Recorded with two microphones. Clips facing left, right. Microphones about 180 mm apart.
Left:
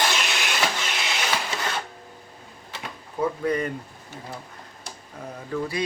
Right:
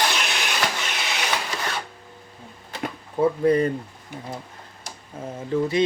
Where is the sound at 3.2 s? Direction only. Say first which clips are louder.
Right 6 dB; 30° right (ahead or behind).